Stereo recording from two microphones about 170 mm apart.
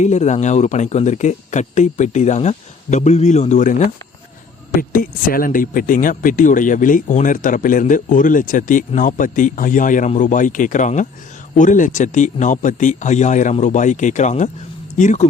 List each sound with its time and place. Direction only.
0.0 s speech: 45° left (ahead or behind)
4.8 s speech: 55° left (ahead or behind)